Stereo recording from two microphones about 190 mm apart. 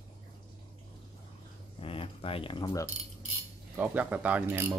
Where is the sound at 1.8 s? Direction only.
30° left (ahead or behind).